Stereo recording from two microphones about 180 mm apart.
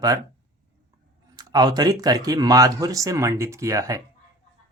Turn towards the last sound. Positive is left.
turn(degrees=-20)  # may be behind; listen again after turning